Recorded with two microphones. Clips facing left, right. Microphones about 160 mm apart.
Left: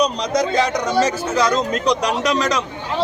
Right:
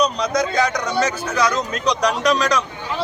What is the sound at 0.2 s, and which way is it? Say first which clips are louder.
Speech: left 1 dB; 30° left (ahead or behind).